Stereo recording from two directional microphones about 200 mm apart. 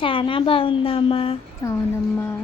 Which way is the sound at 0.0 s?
25° left (ahead or behind).